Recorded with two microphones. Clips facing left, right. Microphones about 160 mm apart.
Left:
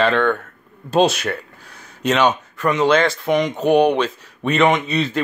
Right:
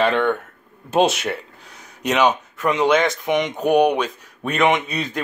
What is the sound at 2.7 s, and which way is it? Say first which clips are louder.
Speech: left 1 dB; 15° right (ahead or behind).